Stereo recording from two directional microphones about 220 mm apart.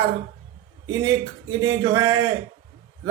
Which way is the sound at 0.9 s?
20° right (ahead or behind).